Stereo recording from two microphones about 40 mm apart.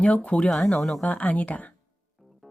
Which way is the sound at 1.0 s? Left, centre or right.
Left.